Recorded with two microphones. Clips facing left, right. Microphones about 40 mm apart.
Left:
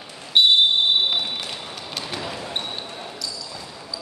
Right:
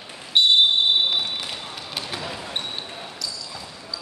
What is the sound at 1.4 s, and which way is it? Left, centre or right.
Run, centre.